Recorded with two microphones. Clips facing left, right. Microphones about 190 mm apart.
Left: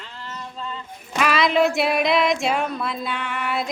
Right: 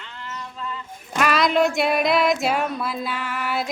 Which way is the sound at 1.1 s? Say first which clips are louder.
Even; centre (ahead or behind).